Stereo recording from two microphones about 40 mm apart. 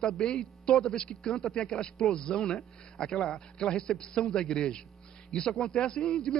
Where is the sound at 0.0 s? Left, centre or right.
Centre.